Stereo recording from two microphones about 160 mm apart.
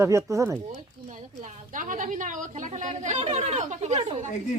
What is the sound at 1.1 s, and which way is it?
A woman's voice, 50° right (ahead or behind).